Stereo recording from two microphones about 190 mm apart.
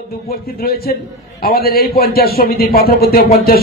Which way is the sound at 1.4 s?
50° left (ahead or behind).